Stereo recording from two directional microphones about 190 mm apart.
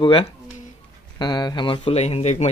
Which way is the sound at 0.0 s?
30° left (ahead or behind).